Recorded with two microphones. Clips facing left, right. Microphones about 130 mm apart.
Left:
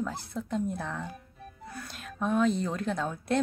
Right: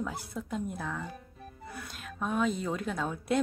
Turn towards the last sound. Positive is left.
turn(degrees=-5)  # may be behind; listen again after turning